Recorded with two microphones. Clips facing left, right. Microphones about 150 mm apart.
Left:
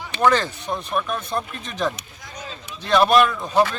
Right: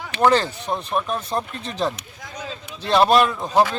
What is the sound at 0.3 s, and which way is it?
Speech, 30° right (ahead or behind).